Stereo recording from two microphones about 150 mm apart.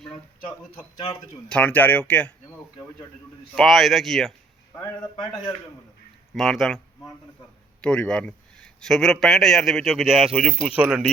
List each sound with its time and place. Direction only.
0.9 s speech: 35° left (ahead or behind)
1.5 s speech: 10° left (ahead or behind)
3.5 s a man's voice: centre (ahead or behind)
6.3 s a man's voice: centre (ahead or behind)